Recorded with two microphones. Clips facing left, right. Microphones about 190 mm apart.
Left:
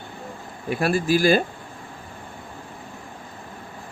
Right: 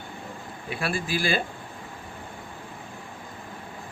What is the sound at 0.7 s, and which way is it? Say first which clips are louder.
Speech: left 8 dB; 45° left (ahead or behind).